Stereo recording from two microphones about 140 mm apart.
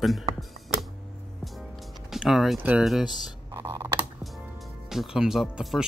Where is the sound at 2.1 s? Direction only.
5° right (ahead or behind).